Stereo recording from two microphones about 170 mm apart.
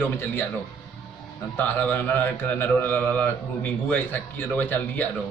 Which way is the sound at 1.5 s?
10° left (ahead or behind).